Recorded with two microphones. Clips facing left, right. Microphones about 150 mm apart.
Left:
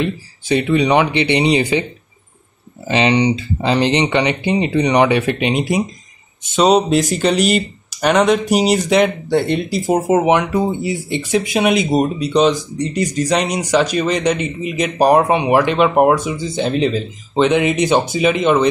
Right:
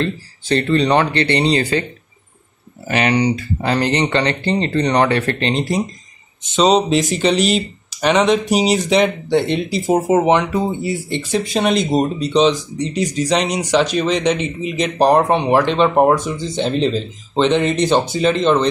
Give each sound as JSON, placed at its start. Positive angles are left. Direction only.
{"t": 0.0, "sound": "speech", "side_deg": 10}
{"t": 2.9, "sound": "speech", "side_deg": 25}